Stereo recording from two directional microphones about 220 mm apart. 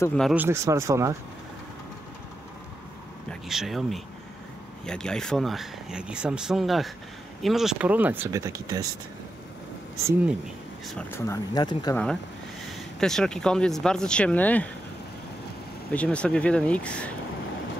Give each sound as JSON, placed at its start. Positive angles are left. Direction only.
{"t": 0.0, "sound": "speech", "side_deg": 5}
{"t": 0.4, "sound": "speech", "side_deg": -10}
{"t": 3.3, "sound": "speech", "side_deg": 0}
{"t": 11.0, "sound": "speech", "side_deg": 10}
{"t": 13.0, "sound": "speech", "side_deg": 5}
{"t": 15.9, "sound": "speech", "side_deg": 5}